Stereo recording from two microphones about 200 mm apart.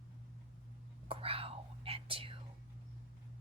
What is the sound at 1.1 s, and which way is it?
Whispering, 30° right (ahead or behind).